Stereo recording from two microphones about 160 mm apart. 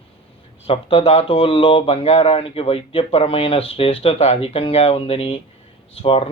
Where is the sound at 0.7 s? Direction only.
35° left (ahead or behind).